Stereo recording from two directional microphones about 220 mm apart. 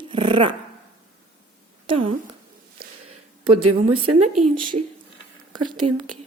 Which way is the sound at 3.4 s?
25° right (ahead or behind).